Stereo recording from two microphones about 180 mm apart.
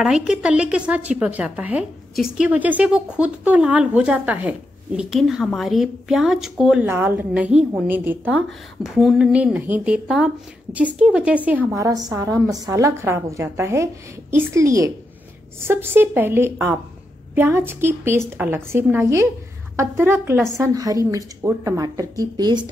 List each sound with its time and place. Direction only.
0.0 s speech: 5° right (ahead or behind); by 22.7 s 25° right (ahead or behind)